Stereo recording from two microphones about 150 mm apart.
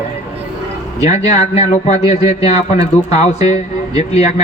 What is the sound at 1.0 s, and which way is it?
A man's voice, 50° left (ahead or behind).